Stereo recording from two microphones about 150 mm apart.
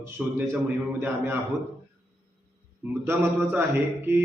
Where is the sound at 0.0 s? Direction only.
10° right (ahead or behind).